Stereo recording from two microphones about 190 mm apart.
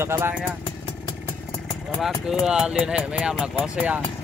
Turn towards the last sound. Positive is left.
turn(degrees=-5)  # may be behind; listen again after turning